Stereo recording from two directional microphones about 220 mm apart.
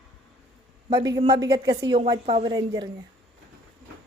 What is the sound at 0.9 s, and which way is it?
A woman's voice, 15° right (ahead or behind).